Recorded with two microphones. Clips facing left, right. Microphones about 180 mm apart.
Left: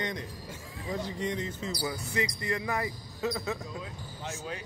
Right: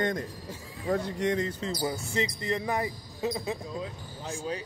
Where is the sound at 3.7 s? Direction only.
30° right (ahead or behind).